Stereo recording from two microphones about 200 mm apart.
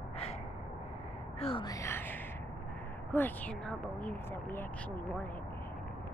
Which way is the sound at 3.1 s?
10° left (ahead or behind).